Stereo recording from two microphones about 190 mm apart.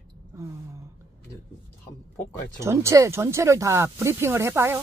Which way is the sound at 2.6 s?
15° right (ahead or behind).